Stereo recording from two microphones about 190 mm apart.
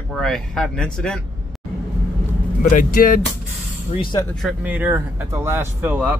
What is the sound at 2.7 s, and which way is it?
Speech, 45° left (ahead or behind).